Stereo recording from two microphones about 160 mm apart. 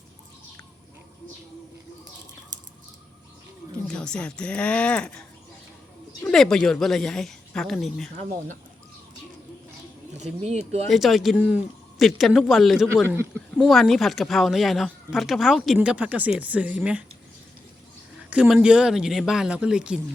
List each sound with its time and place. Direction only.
3.8 s speech: 5° left (ahead or behind)
6.2 s speech: 5° left (ahead or behind)
10.2 s speech: 45° right (ahead or behind)
10.8 s speech: centre (ahead or behind)
18.2 s speech: 5° right (ahead or behind)